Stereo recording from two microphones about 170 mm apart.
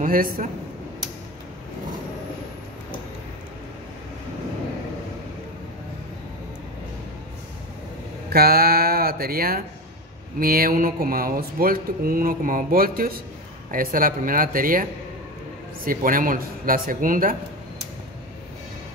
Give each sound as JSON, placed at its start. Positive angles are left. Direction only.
{"t": 0.0, "sound": "a man's voice", "side_deg": -55}
{"t": 8.3, "sound": "a sound", "side_deg": -65}
{"t": 10.4, "sound": "speech", "side_deg": -60}